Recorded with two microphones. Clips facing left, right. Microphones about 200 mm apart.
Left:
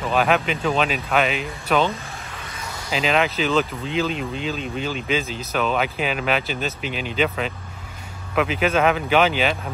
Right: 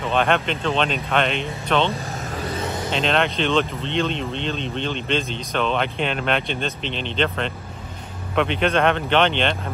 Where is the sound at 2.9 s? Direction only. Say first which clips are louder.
Left 1 dB; 5° left (ahead or behind).